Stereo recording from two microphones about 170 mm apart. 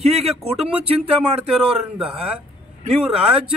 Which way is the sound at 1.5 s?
5° right (ahead or behind).